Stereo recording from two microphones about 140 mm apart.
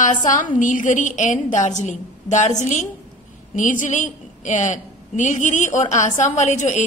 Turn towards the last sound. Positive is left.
turn(degrees=55)  # may be behind; listen again after turning